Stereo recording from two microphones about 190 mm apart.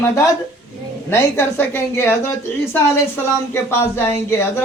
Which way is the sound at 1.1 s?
15° left (ahead or behind).